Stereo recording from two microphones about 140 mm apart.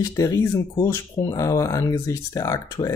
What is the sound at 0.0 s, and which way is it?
Speech, 25° left (ahead or behind).